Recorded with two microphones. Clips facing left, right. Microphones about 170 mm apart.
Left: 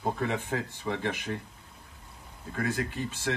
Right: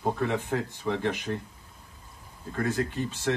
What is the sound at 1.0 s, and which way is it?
Speech, 15° right (ahead or behind).